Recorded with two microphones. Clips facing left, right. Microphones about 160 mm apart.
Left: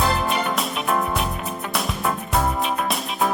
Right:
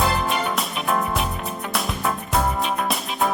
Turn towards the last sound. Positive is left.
turn(degrees=0)  # may be behind; listen again after turning